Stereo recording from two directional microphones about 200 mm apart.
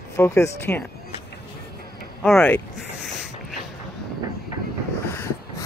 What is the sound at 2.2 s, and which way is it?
Speech, 5° left (ahead or behind).